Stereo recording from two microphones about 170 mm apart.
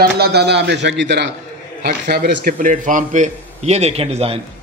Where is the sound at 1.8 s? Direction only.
65° right (ahead or behind).